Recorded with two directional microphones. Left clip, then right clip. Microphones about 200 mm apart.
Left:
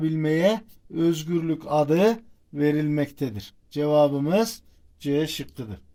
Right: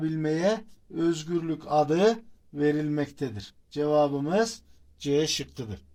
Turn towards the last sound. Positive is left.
turn(degrees=15)  # may be behind; listen again after turning